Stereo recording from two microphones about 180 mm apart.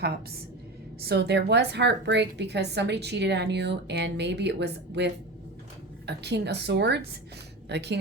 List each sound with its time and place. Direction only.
1.0 s a woman's voice: 65° right (ahead or behind)